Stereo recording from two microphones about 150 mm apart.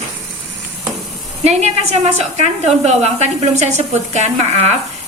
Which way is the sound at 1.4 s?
50° right (ahead or behind).